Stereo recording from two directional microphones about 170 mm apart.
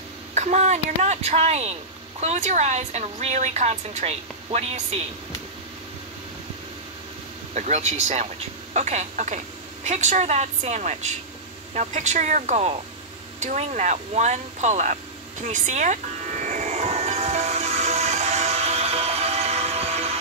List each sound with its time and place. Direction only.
0.3 s speech: 45° right (ahead or behind)
7.5 s speech: 40° right (ahead or behind)
15.4 s music: 45° right (ahead or behind)